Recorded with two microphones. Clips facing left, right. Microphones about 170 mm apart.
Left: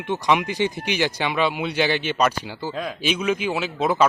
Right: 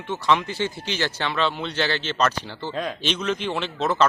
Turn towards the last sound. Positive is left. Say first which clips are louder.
# left 2 dB
turn(degrees=10)  # may be behind; listen again after turning